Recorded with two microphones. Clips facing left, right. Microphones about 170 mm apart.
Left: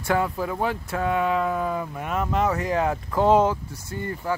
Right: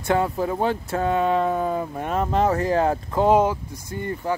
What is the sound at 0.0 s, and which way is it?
Speech, 25° right (ahead or behind).